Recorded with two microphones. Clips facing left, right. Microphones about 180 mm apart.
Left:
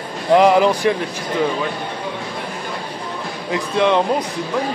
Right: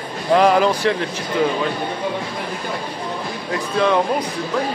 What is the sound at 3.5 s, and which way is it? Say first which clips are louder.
Speech: left 2 dB; 20° left (ahead or behind).